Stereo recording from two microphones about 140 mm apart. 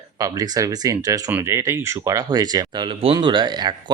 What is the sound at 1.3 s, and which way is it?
Speech, 15° right (ahead or behind).